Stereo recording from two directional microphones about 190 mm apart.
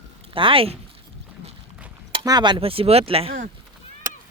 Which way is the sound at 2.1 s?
25° right (ahead or behind).